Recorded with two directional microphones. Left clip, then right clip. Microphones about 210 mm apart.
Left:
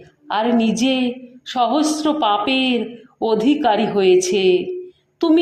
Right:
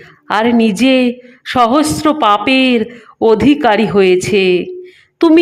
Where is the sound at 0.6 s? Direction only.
65° right (ahead or behind).